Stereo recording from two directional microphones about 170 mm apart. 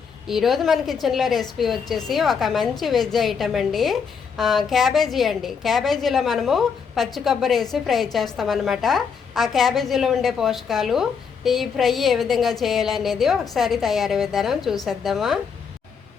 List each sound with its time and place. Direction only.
0.3 s a woman's voice: centre (ahead or behind)